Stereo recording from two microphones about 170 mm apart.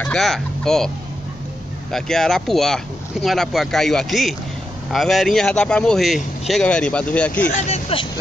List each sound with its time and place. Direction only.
0.0 s speech: 5° left (ahead or behind)
7.4 s speech: 45° left (ahead or behind)